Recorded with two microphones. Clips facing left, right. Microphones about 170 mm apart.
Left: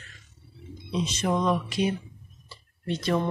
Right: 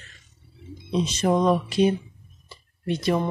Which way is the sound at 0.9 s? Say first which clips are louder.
Right 5 dB; 35° right (ahead or behind).